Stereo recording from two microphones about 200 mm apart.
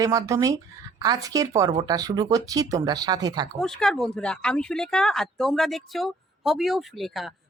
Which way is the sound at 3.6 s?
Centre (ahead or behind).